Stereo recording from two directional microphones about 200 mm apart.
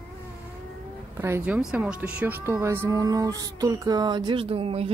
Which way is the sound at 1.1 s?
10° right (ahead or behind).